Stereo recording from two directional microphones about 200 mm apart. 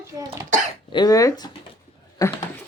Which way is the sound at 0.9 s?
20° left (ahead or behind).